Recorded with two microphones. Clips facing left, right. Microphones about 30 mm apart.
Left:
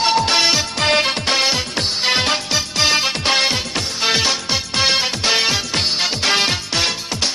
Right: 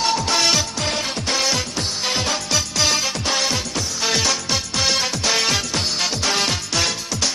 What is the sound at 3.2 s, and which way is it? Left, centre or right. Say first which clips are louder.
Music: left 5 dB; left.